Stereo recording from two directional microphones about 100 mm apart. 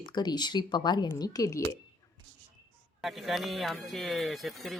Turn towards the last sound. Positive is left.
turn(degrees=0)  # may be behind; listen again after turning